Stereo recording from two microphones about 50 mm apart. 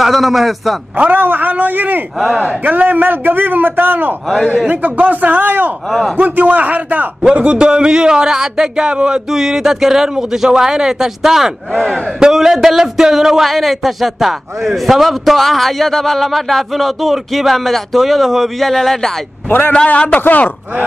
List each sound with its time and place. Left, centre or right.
0.0 s speech: centre
1.1 s a man's voice: right
2.1 s a man's voice: centre
2.4 s a man's voice: right
4.6 s a man's voice: right
5.9 s speech: centre
6.1 s a man's voice: right
7.2 s a man's voice: centre
11.7 s speech: centre
12.2 s speech: centre
19.9 s a man's voice: left